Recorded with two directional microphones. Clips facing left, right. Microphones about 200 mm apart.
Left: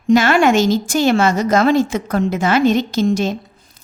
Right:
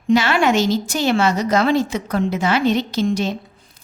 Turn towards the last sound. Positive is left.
turn(degrees=45)  # may be behind; listen again after turning